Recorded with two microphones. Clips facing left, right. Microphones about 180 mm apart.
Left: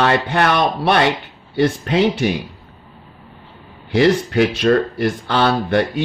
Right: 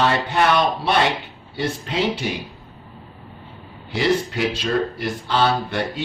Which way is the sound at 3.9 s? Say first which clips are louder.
Left 6 dB; 60° left (ahead or behind).